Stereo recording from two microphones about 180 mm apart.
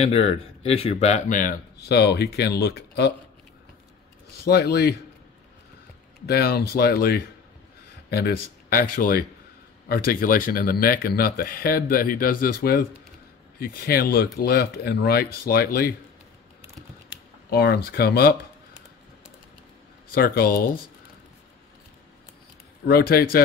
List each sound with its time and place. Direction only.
0.0 s speech: 35° left (ahead or behind)
1.8 s speech: 65° left (ahead or behind)
4.5 s speech: 60° left (ahead or behind)
6.2 s speech: 60° left (ahead or behind)
17.5 s speech: 60° left (ahead or behind)
20.2 s speech: 55° left (ahead or behind)
22.8 s speech: 60° left (ahead or behind)